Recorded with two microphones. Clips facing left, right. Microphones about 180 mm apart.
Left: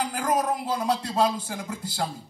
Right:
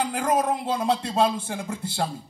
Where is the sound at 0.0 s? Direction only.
25° right (ahead or behind).